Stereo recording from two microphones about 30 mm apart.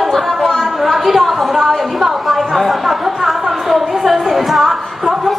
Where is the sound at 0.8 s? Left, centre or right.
Centre.